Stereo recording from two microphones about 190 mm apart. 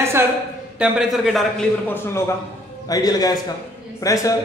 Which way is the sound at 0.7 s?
5° right (ahead or behind).